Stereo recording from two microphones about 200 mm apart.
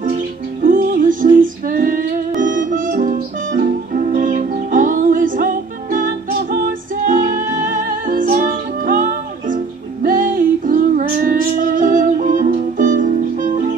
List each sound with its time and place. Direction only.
0.0 s music: 45° right (ahead or behind)